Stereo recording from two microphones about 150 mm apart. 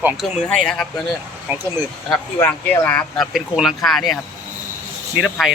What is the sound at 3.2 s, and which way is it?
Speech, centre (ahead or behind).